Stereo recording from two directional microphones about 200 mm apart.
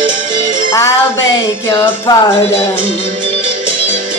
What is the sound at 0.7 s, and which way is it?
Music, 15° left (ahead or behind).